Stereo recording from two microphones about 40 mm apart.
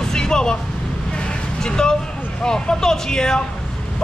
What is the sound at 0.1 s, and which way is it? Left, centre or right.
Music, centre.